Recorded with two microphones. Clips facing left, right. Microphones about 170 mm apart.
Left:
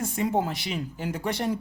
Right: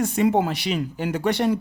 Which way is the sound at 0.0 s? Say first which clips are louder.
Right 6 dB; 80° right.